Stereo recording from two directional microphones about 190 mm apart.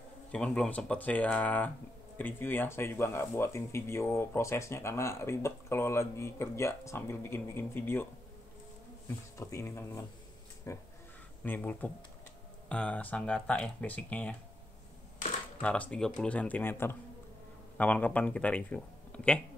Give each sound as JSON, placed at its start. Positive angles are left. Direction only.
{"t": 0.3, "sound": "speech", "side_deg": 5}
{"t": 9.4, "sound": "speech", "side_deg": 15}
{"t": 15.6, "sound": "speech", "side_deg": 5}